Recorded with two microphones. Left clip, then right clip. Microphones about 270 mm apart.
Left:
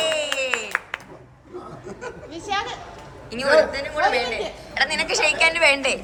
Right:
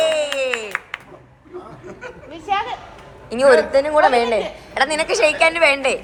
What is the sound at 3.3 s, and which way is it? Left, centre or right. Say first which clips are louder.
A woman's voice: right 4 dB; centre.